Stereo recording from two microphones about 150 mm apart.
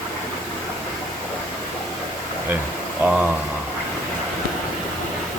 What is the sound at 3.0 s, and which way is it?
Speech, 10° right (ahead or behind).